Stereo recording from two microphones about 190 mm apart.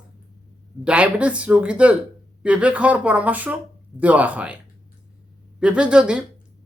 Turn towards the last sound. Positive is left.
turn(degrees=-5)  # may be behind; listen again after turning